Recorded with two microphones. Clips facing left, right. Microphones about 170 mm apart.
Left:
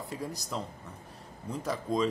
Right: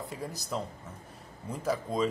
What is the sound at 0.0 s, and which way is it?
Speech, centre (ahead or behind).